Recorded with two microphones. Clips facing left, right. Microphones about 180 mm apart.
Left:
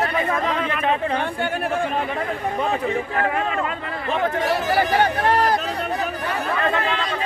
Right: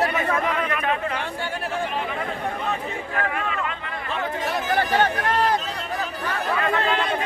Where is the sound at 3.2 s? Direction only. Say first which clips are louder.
Left 1 dB; 30° left (ahead or behind).